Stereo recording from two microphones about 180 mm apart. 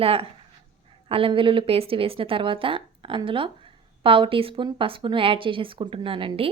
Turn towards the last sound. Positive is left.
turn(degrees=-30)  # may be behind; listen again after turning